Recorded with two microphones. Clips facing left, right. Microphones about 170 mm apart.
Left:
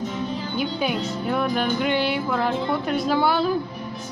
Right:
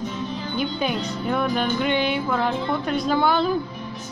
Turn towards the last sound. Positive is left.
turn(degrees=5)  # may be behind; listen again after turning